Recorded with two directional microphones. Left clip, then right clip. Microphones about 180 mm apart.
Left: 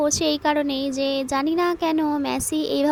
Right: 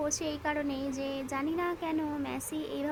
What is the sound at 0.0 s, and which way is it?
A woman's voice, 30° left (ahead or behind).